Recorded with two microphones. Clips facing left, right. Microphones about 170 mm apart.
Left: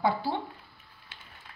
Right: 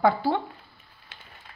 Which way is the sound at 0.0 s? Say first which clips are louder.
Right 6 dB; 60° right (ahead or behind).